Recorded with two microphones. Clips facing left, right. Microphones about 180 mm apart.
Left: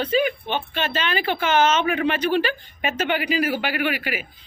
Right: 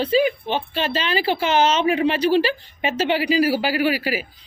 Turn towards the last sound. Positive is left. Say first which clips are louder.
# right 4 dB
turn(degrees=-35)  # may be behind; listen again after turning